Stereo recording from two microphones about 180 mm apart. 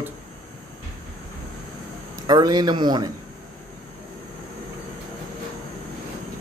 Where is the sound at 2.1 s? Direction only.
20° right (ahead or behind).